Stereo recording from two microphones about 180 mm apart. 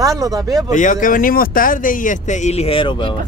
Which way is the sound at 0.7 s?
45° left (ahead or behind).